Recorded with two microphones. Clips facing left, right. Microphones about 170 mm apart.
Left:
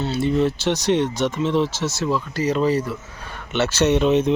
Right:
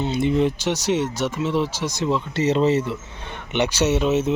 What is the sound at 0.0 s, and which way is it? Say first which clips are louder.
Speech: even; 20° right (ahead or behind).